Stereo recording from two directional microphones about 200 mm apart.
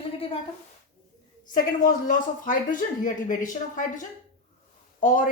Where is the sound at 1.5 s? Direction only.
40° left (ahead or behind).